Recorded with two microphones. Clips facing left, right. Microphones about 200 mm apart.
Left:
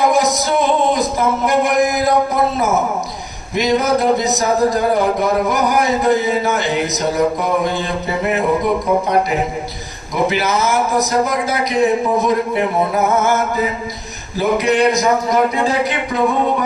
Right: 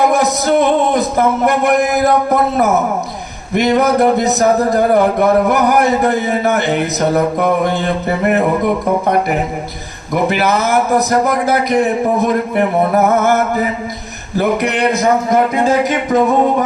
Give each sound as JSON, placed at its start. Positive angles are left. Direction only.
{"t": 0.1, "sound": "speech", "side_deg": -60}
{"t": 10.2, "sound": "speech", "side_deg": -55}
{"t": 15.3, "sound": "music", "side_deg": -45}